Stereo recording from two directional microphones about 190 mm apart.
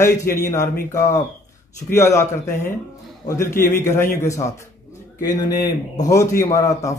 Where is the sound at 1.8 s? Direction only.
15° left (ahead or behind).